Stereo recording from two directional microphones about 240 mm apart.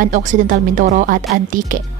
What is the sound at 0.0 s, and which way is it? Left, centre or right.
Speech, right.